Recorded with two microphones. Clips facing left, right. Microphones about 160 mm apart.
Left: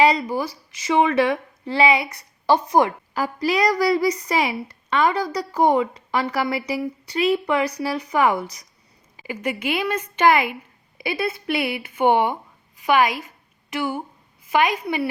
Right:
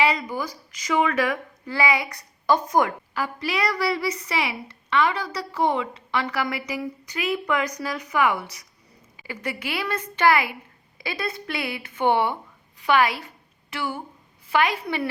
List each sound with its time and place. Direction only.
0.0 s speech: 35° left (ahead or behind)
3.2 s a woman's voice: 40° left (ahead or behind)
9.2 s a woman's voice: 15° left (ahead or behind)